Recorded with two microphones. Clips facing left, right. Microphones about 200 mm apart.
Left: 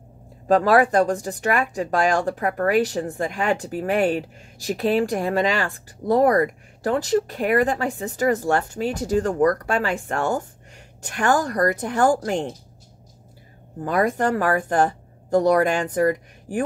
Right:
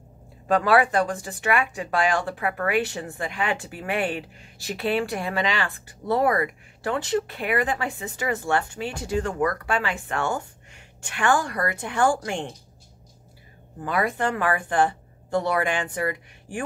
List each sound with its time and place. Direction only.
0.5 s speech: 35° left (ahead or behind)
13.8 s speech: 45° left (ahead or behind)